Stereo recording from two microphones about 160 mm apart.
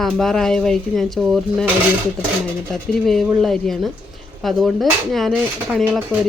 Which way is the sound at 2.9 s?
Centre (ahead or behind).